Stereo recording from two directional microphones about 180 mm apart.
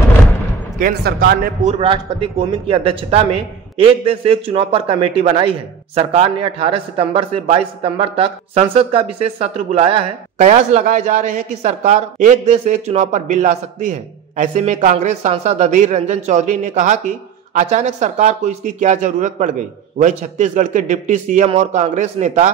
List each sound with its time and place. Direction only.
0.7 s speech: 55° right (ahead or behind)
1.6 s speech: 35° right (ahead or behind)
10.4 s speech: 45° right (ahead or behind)